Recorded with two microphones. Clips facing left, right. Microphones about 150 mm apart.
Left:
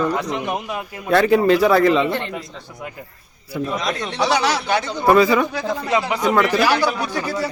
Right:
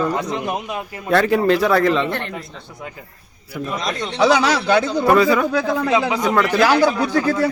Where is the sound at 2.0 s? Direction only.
15° left (ahead or behind).